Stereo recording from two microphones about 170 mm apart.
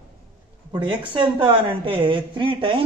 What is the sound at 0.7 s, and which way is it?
Speech, 25° right (ahead or behind).